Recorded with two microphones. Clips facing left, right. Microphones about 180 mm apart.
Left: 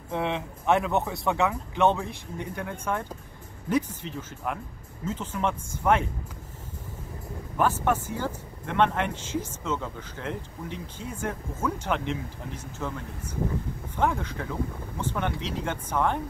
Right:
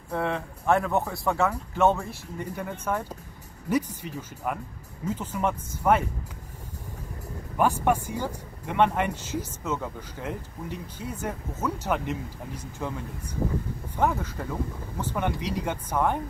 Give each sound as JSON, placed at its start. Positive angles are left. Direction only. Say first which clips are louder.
{"t": 0.1, "sound": "speech", "louder": "even", "side_deg": 0}
{"t": 3.9, "sound": "speech", "louder": "even", "side_deg": -10}
{"t": 7.5, "sound": "speech", "louder": "right 1 dB", "side_deg": -10}
{"t": 13.9, "sound": "speech", "louder": "right 1 dB", "side_deg": -5}